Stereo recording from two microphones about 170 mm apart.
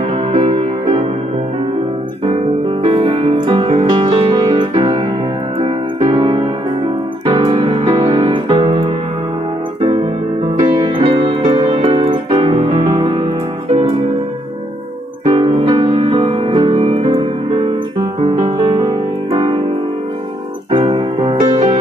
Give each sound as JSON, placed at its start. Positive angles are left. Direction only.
{"t": 0.1, "sound": "music", "side_deg": -35}
{"t": 2.8, "sound": "music", "side_deg": -35}
{"t": 10.9, "sound": "music", "side_deg": -30}
{"t": 13.0, "sound": "music", "side_deg": -25}
{"t": 13.7, "sound": "music", "side_deg": -40}
{"t": 15.3, "sound": "music", "side_deg": -30}
{"t": 20.7, "sound": "music", "side_deg": -30}